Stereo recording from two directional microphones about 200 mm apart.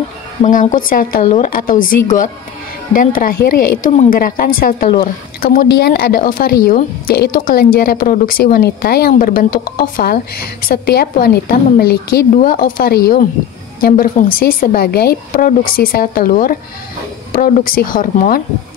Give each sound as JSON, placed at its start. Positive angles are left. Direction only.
{"t": 0.4, "sound": "a woman's voice", "side_deg": 40}